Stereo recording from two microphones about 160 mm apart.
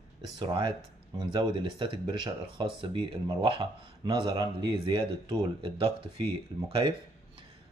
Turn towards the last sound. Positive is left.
turn(degrees=-35)  # may be behind; listen again after turning